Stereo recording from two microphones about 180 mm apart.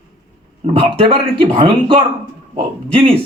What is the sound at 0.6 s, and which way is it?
Speech, 30° right (ahead or behind).